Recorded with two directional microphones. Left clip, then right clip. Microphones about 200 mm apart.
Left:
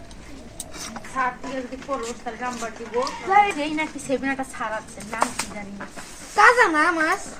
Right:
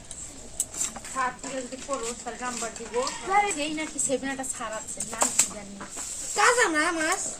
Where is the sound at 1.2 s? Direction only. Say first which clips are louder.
Left 4 dB; 55° left (ahead or behind).